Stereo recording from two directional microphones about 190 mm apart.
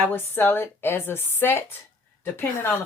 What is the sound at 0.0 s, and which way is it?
Speech, 10° left (ahead or behind).